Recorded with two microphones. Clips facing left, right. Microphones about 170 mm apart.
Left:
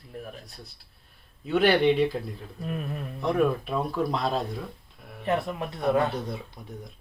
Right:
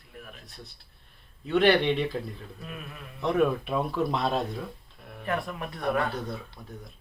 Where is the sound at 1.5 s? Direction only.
5° left (ahead or behind).